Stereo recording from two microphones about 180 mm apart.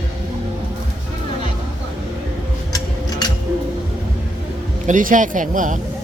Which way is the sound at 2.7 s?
20° left (ahead or behind).